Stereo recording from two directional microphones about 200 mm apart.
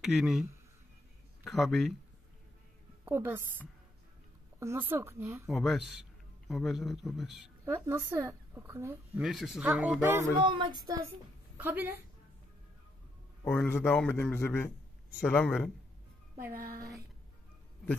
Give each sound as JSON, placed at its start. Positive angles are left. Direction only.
{"t": 0.0, "sound": "a man's voice", "side_deg": 0}
{"t": 3.1, "sound": "speech", "side_deg": -10}
{"t": 5.5, "sound": "a man's voice", "side_deg": 0}
{"t": 7.6, "sound": "speech", "side_deg": -10}
{"t": 9.2, "sound": "a man's voice", "side_deg": 0}
{"t": 10.4, "sound": "a woman's voice", "side_deg": -25}
{"t": 11.5, "sound": "a woman's voice", "side_deg": -10}
{"t": 13.6, "sound": "a man's voice", "side_deg": 10}
{"t": 16.3, "sound": "speech", "side_deg": -15}